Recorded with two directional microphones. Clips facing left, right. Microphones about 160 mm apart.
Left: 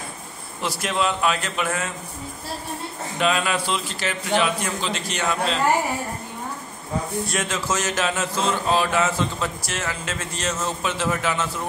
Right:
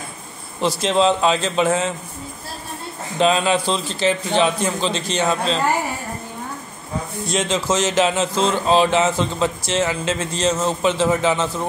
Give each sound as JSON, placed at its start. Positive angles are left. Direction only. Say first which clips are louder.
{"t": 0.6, "sound": "speech", "louder": "right 7 dB", "side_deg": -25}
{"t": 3.2, "sound": "speech", "louder": "right 5 dB", "side_deg": -30}
{"t": 7.2, "sound": "speech", "louder": "right 5 dB", "side_deg": -20}